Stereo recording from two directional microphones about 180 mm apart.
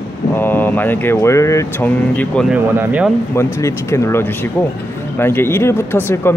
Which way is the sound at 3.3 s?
15° left (ahead or behind).